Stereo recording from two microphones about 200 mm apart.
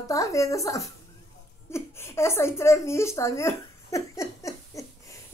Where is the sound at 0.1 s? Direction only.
15° left (ahead or behind).